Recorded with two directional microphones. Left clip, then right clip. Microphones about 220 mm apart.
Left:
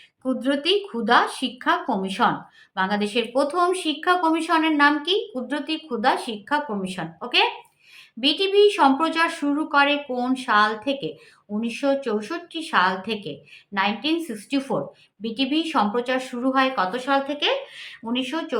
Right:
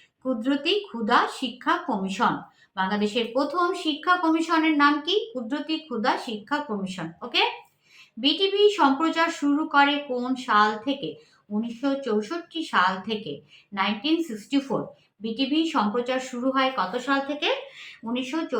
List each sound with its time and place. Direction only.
0.2 s a woman's voice: 45° left (ahead or behind)